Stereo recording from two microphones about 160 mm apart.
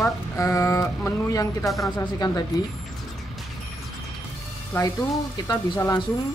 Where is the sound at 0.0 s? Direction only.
20° left (ahead or behind).